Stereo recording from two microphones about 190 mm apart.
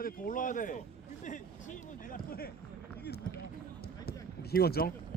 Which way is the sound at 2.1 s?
50° left (ahead or behind).